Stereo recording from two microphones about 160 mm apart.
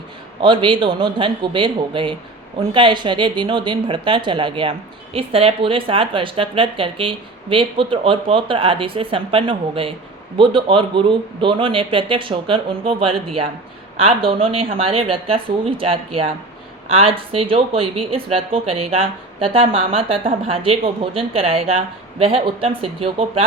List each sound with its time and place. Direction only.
0.4 s speech: 30° right (ahead or behind)